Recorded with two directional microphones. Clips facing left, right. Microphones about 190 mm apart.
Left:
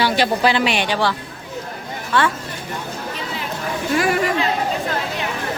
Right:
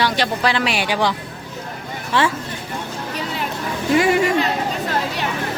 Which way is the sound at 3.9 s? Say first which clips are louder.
Right 3 dB; 25° right (ahead or behind).